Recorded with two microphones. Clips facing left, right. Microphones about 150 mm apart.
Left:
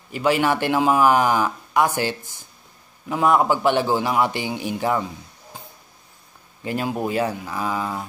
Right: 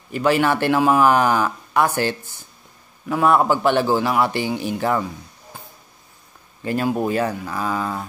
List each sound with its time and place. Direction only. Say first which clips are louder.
0.1 s a man's voice: right 2 dB; 15° left (ahead or behind)
3.1 s a man's voice: right 1 dB; 15° left (ahead or behind)
6.6 s a man's voice: right 3 dB; 15° left (ahead or behind)